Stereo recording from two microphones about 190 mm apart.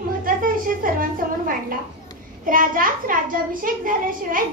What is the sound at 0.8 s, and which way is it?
Speech, 45° right (ahead or behind).